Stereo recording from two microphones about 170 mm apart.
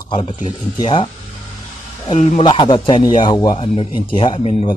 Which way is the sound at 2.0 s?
40° left (ahead or behind).